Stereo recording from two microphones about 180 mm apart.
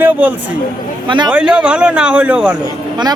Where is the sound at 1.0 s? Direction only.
25° right (ahead or behind).